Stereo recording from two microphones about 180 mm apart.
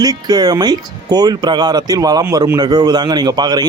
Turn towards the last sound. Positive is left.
turn(degrees=-25)  # may be behind; listen again after turning